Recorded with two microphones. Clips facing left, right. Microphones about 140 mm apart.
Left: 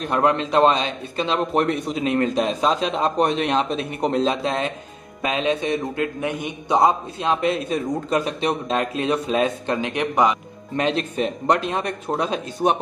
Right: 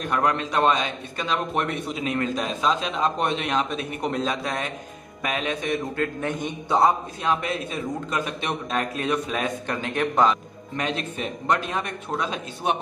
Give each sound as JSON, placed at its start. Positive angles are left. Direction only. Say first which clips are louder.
{"t": 0.0, "sound": "a man's voice", "louder": "left 4 dB", "side_deg": 30}
{"t": 10.8, "sound": "a man's voice", "louder": "left 6 dB", "side_deg": 30}